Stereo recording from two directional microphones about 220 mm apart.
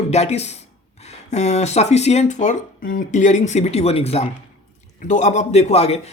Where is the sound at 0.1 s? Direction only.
30° left (ahead or behind).